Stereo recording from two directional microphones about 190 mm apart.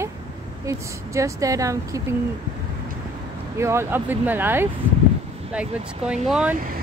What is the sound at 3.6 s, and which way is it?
Speech, 15° right (ahead or behind).